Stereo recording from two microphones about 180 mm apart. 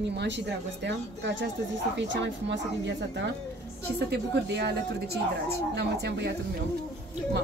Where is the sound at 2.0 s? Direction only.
80° right.